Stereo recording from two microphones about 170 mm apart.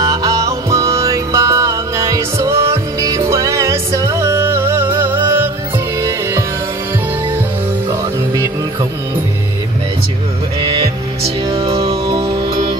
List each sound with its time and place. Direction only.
0.0 s music: 20° right (ahead or behind)
10.6 s music: 25° right (ahead or behind)